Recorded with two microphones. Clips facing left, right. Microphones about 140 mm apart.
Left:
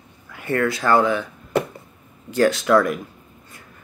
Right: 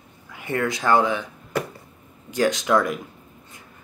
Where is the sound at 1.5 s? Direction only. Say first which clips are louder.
Left 5 dB; 25° left (ahead or behind).